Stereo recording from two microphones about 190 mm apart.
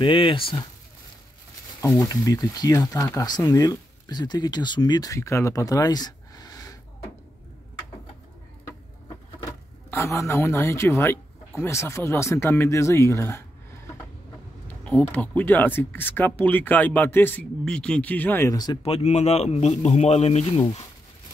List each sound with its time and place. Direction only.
0.0 s speech: 25° left (ahead or behind)
1.8 s speech: 15° left (ahead or behind)
8.6 s speech: 15° left (ahead or behind)
14.8 s speech: 5° left (ahead or behind)
18.8 s a man's voice: 35° left (ahead or behind)